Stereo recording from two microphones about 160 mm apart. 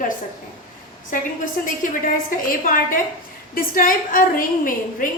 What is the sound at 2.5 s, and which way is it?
A woman's voice, 60° left (ahead or behind).